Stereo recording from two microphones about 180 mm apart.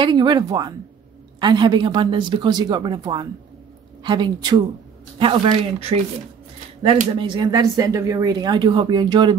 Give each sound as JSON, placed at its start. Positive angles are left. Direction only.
{"t": 0.0, "sound": "speech", "side_deg": -25}